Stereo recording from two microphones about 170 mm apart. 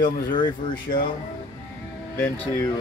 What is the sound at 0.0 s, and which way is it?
Speech, 30° left (ahead or behind).